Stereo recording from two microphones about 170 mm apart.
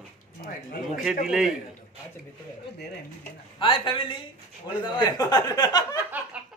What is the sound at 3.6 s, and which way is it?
Speech, 30° left (ahead or behind).